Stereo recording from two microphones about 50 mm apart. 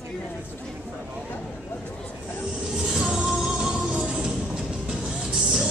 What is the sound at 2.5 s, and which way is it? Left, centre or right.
Music, centre.